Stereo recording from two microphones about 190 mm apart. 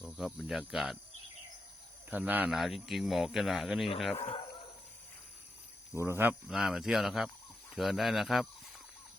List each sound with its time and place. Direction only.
0.0 s speech: centre (ahead or behind)
2.0 s speech: 10° right (ahead or behind)
4.2 s speech: 35° left (ahead or behind)
5.9 s speech: 15° right (ahead or behind)